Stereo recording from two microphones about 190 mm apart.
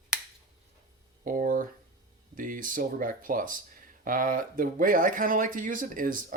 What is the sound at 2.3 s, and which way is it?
Speech, 45° right (ahead or behind).